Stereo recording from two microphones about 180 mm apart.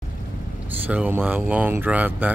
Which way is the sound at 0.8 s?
10° right (ahead or behind).